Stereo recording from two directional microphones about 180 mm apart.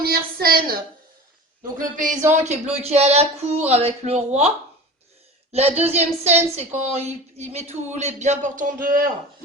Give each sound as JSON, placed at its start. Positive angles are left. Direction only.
{"t": 0.0, "sound": "a woman's voice", "side_deg": -55}
{"t": 2.4, "sound": "speech", "side_deg": -35}